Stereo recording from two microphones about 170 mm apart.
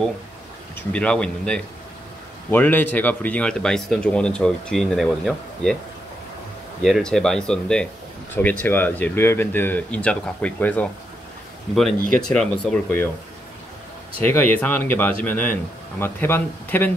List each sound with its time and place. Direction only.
0.7 s speech: 5° left (ahead or behind)
6.8 s speech: centre (ahead or behind)
12.3 s speech: 5° left (ahead or behind)
14.2 s speech: 10° left (ahead or behind)